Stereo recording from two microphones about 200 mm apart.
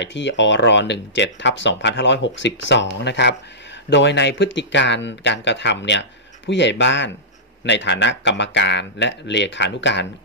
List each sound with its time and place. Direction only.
0.0 s speech: 65° left (ahead or behind)